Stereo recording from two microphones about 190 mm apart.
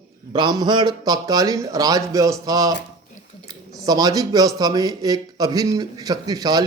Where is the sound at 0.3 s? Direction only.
25° right (ahead or behind).